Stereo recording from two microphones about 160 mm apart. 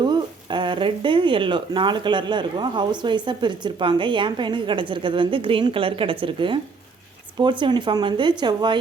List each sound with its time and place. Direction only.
0.0 s speech: 30° right (ahead or behind)